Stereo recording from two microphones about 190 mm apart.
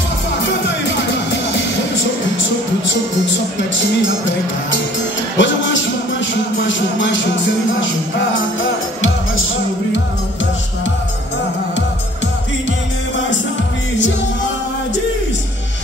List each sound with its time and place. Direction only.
5.4 s music: 75° left (ahead or behind)